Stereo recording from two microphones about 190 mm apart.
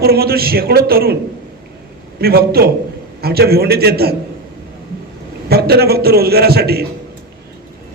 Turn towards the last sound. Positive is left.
turn(degrees=-55)  # may be behind; listen again after turning